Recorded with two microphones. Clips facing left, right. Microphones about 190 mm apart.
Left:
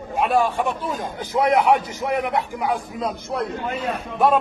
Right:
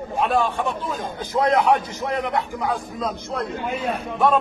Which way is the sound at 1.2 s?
15° left (ahead or behind).